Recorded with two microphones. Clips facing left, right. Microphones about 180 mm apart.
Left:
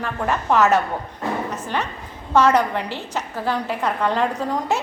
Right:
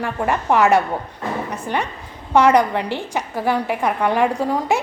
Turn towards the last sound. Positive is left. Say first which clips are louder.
# right 3 dB
turn(degrees=-10)  # may be behind; listen again after turning